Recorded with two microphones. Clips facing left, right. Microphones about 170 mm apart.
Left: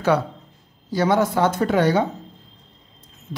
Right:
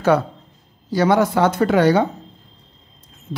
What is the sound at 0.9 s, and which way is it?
Speech, 75° right (ahead or behind).